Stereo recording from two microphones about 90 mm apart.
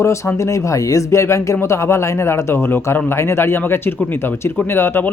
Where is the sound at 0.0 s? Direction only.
30° left (ahead or behind).